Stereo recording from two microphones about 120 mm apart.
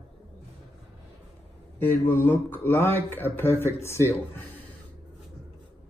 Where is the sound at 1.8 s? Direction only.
15° left (ahead or behind).